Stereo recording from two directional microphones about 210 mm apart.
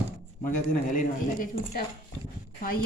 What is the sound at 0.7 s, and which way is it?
A woman's voice, 40° left (ahead or behind).